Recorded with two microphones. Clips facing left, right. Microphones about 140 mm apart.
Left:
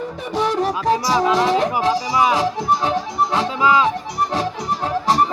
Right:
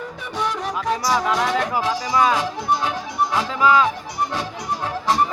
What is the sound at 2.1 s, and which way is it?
Speech, 15° left (ahead or behind).